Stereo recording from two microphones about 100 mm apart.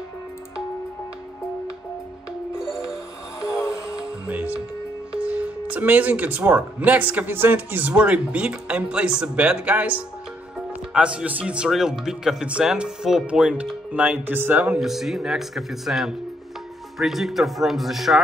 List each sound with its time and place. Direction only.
2.5 s music: 5° right (ahead or behind)
3.3 s music: 35° left (ahead or behind)
4.3 s speech: 15° right (ahead or behind)